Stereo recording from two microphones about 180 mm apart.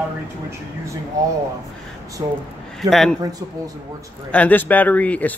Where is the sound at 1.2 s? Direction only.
20° right (ahead or behind).